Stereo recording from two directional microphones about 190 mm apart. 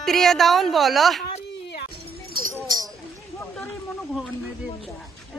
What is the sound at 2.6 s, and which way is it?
Speech, 20° right (ahead or behind).